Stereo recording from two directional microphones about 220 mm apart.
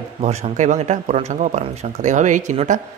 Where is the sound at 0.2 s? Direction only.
30° right (ahead or behind).